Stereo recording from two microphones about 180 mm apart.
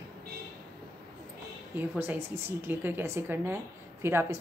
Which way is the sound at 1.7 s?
10° right (ahead or behind).